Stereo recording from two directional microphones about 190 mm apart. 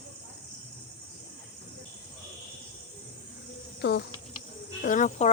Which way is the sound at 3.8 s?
60° left (ahead or behind).